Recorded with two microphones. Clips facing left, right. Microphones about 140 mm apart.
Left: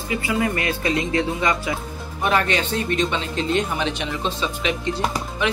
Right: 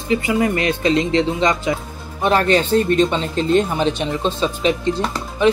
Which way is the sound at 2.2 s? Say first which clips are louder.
Right 5 dB; 35° right (ahead or behind).